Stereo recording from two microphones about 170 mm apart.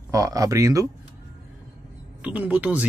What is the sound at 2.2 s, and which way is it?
Speech, 10° right (ahead or behind).